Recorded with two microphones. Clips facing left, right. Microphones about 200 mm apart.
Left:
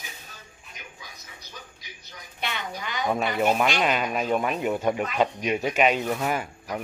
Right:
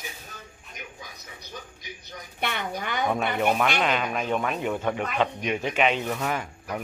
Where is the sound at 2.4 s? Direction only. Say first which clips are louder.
Right 3 dB; 55° right (ahead or behind).